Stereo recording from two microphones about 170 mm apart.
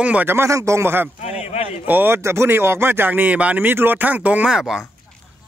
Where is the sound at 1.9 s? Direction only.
15° right (ahead or behind).